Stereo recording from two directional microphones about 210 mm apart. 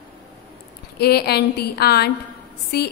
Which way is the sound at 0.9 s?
50° left (ahead or behind).